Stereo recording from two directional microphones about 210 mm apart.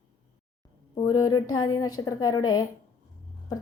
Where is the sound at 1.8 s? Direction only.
20° left (ahead or behind).